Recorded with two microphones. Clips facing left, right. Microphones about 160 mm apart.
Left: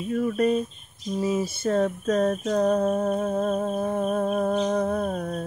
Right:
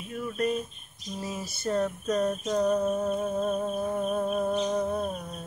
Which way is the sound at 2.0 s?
90° left.